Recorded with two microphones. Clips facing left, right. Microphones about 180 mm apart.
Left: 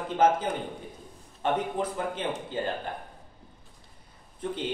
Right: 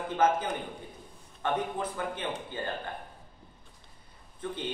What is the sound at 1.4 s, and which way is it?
Speech, 20° left (ahead or behind).